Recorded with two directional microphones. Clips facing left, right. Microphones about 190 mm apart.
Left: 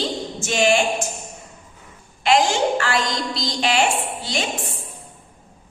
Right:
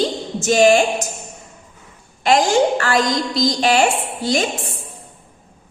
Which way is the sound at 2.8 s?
40° right (ahead or behind).